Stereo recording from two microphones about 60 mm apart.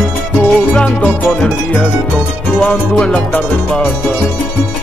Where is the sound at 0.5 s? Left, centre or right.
Left.